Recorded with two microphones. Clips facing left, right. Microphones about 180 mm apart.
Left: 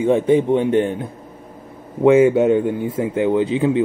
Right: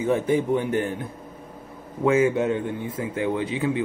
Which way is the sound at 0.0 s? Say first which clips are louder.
Left 7 dB; 25° left (ahead or behind).